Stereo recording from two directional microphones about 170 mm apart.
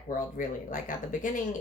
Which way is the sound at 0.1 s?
50° left (ahead or behind).